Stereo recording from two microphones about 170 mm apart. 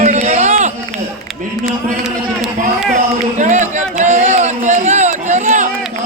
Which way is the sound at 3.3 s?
45° right (ahead or behind).